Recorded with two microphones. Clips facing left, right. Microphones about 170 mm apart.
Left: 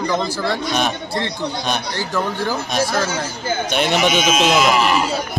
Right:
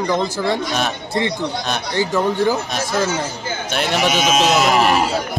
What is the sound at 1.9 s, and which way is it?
Speech, 20° right (ahead or behind).